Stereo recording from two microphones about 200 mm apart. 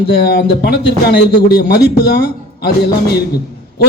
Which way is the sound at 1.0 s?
55° left (ahead or behind).